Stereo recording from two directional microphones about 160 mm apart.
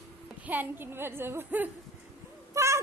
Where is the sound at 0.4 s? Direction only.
10° right (ahead or behind).